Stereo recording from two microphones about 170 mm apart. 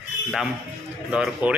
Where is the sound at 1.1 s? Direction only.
5° right (ahead or behind).